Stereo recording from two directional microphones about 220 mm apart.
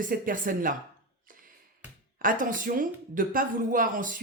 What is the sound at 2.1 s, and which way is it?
Speech, 40° right (ahead or behind).